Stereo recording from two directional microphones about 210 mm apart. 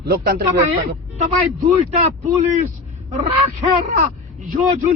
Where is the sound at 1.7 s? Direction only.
30° right (ahead or behind).